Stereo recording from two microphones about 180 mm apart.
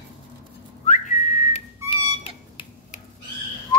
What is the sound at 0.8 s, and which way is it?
Whistling, 40° left (ahead or behind).